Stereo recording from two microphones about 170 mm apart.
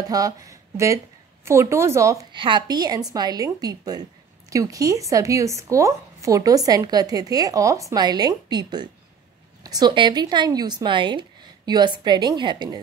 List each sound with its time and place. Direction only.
0.1 s a woman's voice: 20° right (ahead or behind)
2.3 s a woman's voice: 30° right (ahead or behind)